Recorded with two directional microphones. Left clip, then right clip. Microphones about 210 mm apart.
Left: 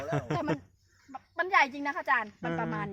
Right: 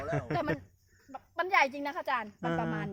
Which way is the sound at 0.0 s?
15° left (ahead or behind).